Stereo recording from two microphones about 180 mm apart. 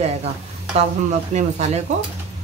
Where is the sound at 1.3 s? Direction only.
40° right (ahead or behind).